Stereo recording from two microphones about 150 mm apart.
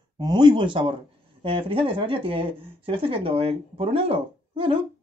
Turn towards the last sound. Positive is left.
turn(degrees=-35)  # may be behind; listen again after turning